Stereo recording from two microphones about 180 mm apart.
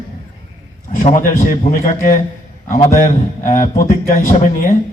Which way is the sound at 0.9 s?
45° left (ahead or behind).